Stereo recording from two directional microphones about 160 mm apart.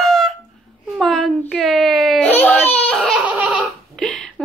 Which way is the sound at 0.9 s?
Centre (ahead or behind).